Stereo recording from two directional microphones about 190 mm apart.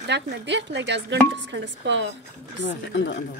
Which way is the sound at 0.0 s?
65° right (ahead or behind).